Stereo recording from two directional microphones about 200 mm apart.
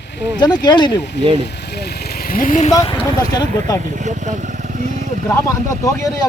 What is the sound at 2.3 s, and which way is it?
Speech, 45° left (ahead or behind).